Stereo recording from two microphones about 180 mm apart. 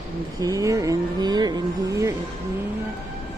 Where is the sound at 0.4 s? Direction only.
20° right (ahead or behind).